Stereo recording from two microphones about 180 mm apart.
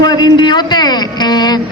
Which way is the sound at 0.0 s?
25° left (ahead or behind).